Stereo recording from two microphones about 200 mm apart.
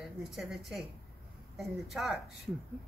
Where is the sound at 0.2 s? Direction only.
Centre (ahead or behind).